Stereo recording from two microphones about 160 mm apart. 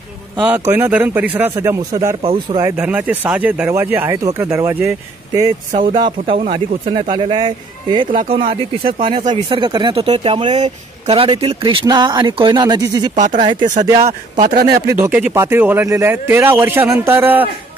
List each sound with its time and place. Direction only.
0.4 s speech: 10° right (ahead or behind)
2.2 s speech: 30° right (ahead or behind)
2.6 s speech: 10° right (ahead or behind)
5.7 s speech: 55° right (ahead or behind)
5.9 s speech: 30° right (ahead or behind)
14.8 s speech: 15° right (ahead or behind)